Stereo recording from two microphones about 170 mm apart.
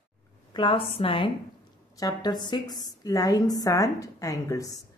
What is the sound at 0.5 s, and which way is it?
A woman's voice, 30° left (ahead or behind).